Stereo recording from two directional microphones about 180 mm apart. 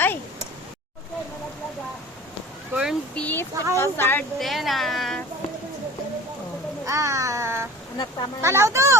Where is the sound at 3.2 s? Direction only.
10° left (ahead or behind).